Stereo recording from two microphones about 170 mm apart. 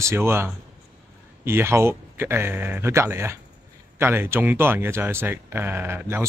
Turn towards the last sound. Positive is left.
turn(degrees=-15)  # may be behind; listen again after turning